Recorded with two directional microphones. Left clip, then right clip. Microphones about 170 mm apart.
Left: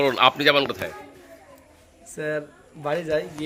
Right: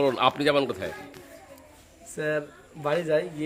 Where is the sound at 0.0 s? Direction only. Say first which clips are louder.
Left 4 dB; centre (ahead or behind).